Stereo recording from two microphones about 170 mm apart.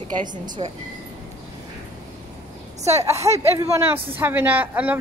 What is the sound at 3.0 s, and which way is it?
Speech, 20° right (ahead or behind).